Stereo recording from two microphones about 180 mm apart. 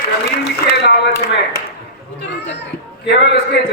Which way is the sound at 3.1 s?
70° left (ahead or behind).